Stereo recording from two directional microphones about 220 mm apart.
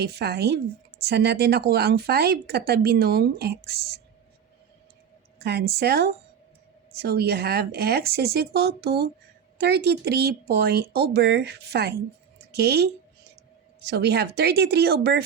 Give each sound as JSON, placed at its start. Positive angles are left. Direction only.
{"t": 0.0, "sound": "speech", "side_deg": -45}
{"t": 5.4, "sound": "speech", "side_deg": -45}